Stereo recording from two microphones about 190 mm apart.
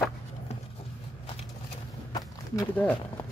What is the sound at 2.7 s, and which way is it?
Speech, 10° left (ahead or behind).